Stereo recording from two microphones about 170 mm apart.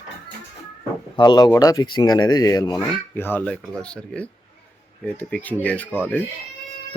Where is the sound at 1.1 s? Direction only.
25° left (ahead or behind); by 5.8 s 10° left (ahead or behind).